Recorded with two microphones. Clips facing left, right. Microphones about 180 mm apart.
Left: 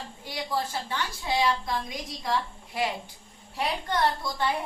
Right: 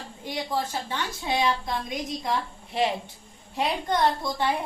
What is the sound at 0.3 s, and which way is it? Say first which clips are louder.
A woman's voice: right 2 dB; 20° right (ahead or behind).